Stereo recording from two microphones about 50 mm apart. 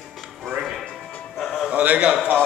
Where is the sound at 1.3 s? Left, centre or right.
Centre.